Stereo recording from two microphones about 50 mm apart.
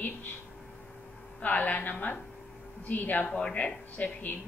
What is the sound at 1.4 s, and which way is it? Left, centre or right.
A woman's voice, left.